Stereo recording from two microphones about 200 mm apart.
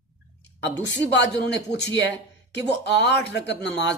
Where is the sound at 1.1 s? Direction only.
60° left (ahead or behind).